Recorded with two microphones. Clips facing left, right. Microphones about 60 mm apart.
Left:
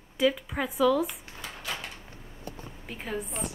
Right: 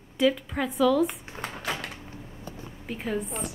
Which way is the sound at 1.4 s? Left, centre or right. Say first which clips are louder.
Right 5 dB; right.